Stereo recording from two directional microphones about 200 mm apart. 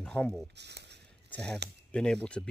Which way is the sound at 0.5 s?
60° right (ahead or behind).